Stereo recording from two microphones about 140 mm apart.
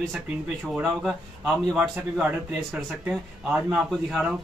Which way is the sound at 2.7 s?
5° right (ahead or behind).